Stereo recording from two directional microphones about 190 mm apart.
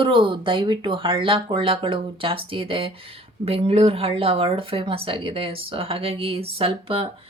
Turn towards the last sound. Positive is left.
turn(degrees=-30)  # may be behind; listen again after turning